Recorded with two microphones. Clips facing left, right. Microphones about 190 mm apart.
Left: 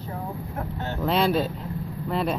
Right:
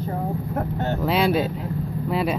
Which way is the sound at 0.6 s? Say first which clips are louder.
Right 6 dB; 50° right (ahead or behind).